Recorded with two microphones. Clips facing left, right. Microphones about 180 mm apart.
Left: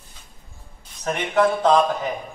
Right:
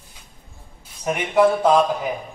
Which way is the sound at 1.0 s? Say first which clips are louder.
Right 3 dB; 10° right (ahead or behind).